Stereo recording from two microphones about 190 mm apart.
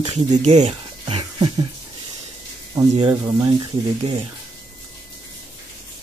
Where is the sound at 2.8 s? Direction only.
25° right (ahead or behind).